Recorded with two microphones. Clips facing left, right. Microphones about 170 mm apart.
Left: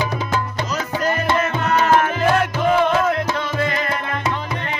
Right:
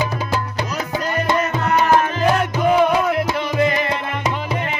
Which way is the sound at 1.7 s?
15° right (ahead or behind).